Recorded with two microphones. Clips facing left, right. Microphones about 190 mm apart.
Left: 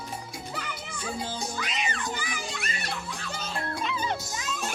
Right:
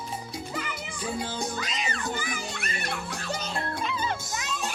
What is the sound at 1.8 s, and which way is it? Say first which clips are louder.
Music: right 1 dB; 45° right (ahead or behind).